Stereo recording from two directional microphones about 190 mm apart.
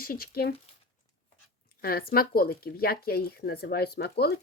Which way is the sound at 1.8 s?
55° left (ahead or behind).